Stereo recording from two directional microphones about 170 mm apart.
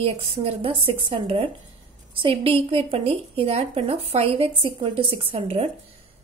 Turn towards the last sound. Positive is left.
turn(degrees=-35)  # may be behind; listen again after turning